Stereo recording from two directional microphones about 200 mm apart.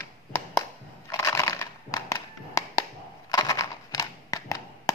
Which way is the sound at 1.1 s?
15° left (ahead or behind).